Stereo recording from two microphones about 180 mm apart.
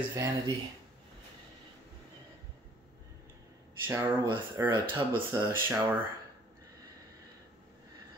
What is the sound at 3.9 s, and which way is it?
Speech, 15° right (ahead or behind).